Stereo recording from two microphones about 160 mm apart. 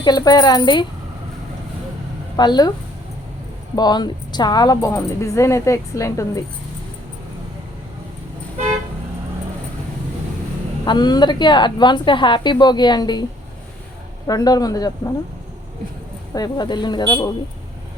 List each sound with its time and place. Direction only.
0.0 s speech: 25° left (ahead or behind)
2.3 s speech: 25° left (ahead or behind)
3.8 s speech: 25° left (ahead or behind)
10.8 s speech: 25° left (ahead or behind)
14.3 s speech: 25° left (ahead or behind)
16.3 s speech: 25° left (ahead or behind)